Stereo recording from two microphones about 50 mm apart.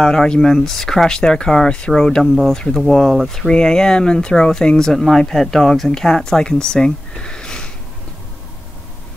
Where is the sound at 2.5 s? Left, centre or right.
Centre.